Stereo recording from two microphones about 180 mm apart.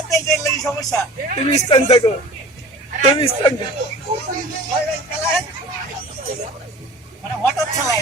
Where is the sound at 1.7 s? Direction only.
35° left (ahead or behind).